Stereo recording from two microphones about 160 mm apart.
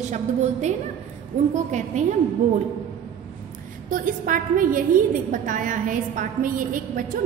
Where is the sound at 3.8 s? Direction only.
55° right (ahead or behind).